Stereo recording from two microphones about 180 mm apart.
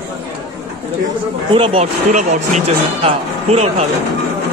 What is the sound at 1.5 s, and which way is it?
Speech, 30° right (ahead or behind).